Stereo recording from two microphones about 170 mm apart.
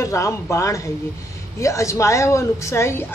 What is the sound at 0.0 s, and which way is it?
A woman's voice, 15° left (ahead or behind).